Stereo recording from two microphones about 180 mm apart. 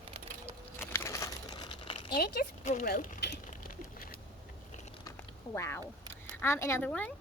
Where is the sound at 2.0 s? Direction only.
60° left (ahead or behind).